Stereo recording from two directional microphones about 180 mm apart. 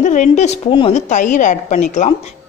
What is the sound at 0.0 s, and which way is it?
Speech, 45° left (ahead or behind).